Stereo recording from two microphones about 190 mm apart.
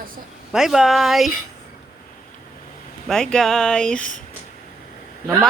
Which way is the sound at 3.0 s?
5° left (ahead or behind).